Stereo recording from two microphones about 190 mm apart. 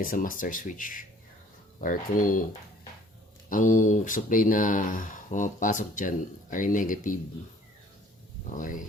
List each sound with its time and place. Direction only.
0.0 s speech: 45° left (ahead or behind)
8.4 s speech: 45° left (ahead or behind)